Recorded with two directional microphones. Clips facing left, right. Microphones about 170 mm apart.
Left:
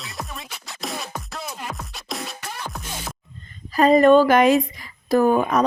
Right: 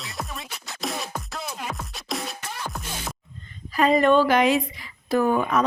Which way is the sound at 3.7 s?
40° left (ahead or behind).